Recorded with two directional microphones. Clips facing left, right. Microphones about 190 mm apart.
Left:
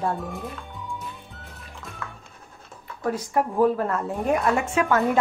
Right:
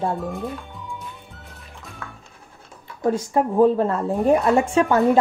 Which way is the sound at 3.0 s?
25° right (ahead or behind).